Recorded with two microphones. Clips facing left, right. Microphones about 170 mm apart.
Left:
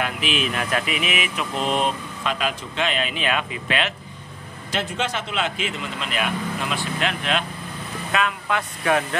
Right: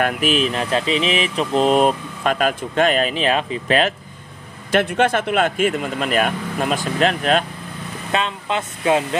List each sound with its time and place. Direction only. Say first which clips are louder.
0.0 s speech: right 6 dB; 45° right (ahead or behind)
4.6 s speech: right 9 dB; 60° right (ahead or behind); by 7.4 s 40° right (ahead or behind)
8.1 s speech: right 2 dB; 25° right (ahead or behind)